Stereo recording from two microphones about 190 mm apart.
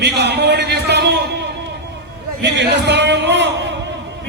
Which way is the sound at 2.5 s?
65° right (ahead or behind).